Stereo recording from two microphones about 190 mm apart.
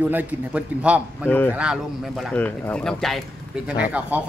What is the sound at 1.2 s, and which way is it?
Speech, 10° left (ahead or behind).